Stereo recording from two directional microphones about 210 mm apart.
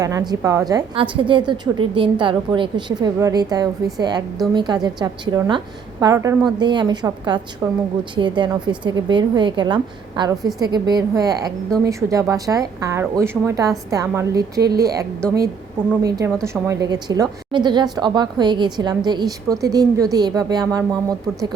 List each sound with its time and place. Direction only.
0.0 s a woman's voice: 15° right (ahead or behind)
16.0 s a woman's voice: 15° right (ahead or behind)